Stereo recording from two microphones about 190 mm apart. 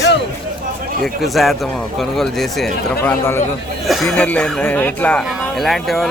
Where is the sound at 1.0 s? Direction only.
Centre (ahead or behind).